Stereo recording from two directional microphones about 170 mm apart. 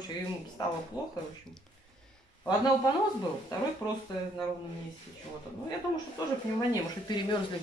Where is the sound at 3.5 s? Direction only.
25° left (ahead or behind).